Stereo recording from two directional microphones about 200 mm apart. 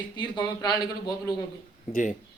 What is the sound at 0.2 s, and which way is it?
Speech, 20° left (ahead or behind).